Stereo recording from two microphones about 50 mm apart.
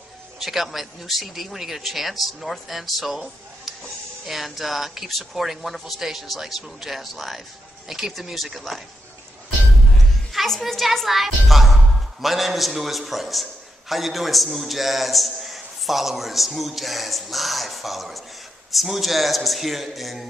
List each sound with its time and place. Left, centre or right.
0.4 s a man's voice: centre
10.3 s a man's voice: centre